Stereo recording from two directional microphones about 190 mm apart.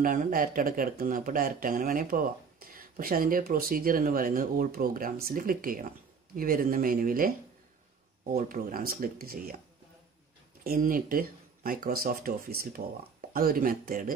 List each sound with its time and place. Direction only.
0.0 s speech: 50° right (ahead or behind)
10.6 s speech: 50° right (ahead or behind)